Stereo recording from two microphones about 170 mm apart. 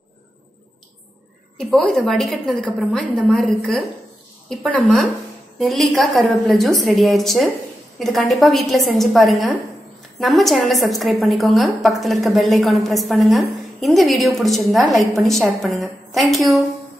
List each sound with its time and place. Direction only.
1.6 s a woman's voice: centre (ahead or behind)